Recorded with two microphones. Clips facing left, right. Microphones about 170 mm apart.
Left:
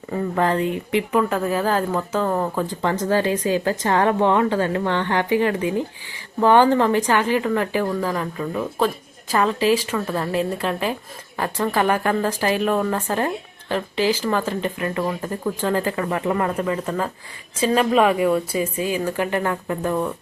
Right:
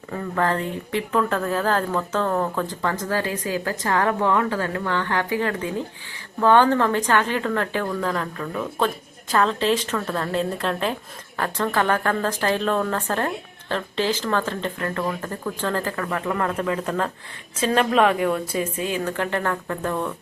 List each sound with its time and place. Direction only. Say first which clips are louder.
0.1 s a woman's voice: left 3 dB; 15° left (ahead or behind)
2.8 s a woman's voice: left 6 dB; 20° left (ahead or behind)